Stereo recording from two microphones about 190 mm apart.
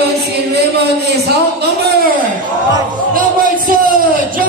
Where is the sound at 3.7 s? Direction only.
50° right (ahead or behind).